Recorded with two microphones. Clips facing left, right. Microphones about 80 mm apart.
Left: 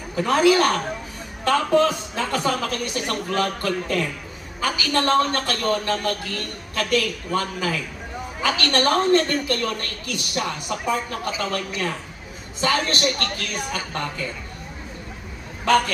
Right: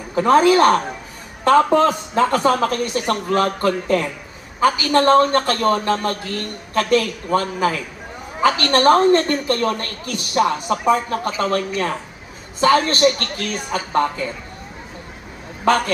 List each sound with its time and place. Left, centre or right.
0.2 s a man's voice: right